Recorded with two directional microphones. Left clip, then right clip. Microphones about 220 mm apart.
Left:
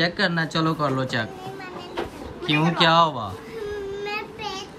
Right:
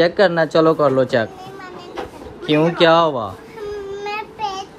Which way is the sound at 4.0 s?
20° right (ahead or behind).